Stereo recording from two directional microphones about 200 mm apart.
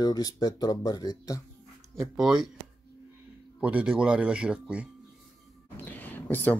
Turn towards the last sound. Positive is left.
turn(degrees=10)  # may be behind; listen again after turning